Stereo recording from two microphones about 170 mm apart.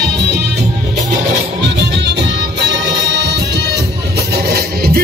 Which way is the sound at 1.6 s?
90° right.